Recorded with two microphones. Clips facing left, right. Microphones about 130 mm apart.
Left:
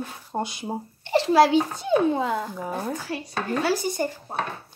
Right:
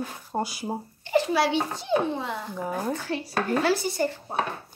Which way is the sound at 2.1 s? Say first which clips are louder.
Left 6 dB; 45° left (ahead or behind).